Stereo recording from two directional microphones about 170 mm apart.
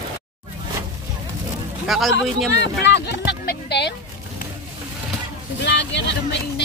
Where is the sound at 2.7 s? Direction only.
90° left.